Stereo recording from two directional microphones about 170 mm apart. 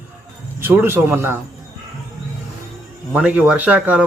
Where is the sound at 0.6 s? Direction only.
10° right (ahead or behind).